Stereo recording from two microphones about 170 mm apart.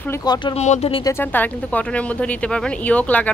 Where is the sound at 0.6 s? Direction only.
40° left (ahead or behind).